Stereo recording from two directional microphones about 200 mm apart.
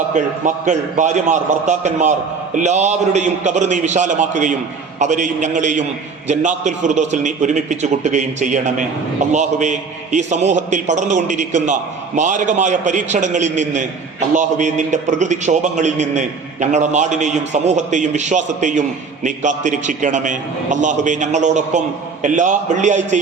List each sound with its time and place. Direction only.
0.1 s a man's voice: 40° right (ahead or behind)